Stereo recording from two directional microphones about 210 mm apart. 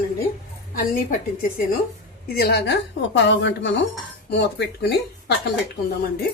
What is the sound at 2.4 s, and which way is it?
A woman's voice, 50° left (ahead or behind).